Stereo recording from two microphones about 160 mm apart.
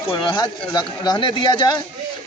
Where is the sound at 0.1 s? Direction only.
30° left (ahead or behind).